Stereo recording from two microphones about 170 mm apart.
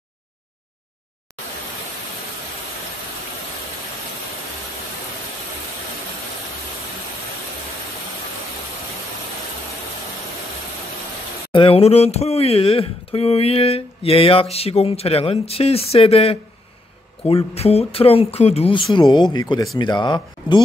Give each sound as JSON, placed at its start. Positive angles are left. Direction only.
{"t": 11.5, "sound": "speech", "side_deg": 30}